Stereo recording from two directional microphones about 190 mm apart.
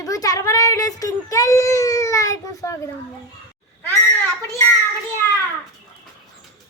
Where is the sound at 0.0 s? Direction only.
20° left (ahead or behind).